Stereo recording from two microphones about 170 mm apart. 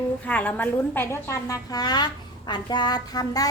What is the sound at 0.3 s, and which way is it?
A woman's voice, 10° left (ahead or behind).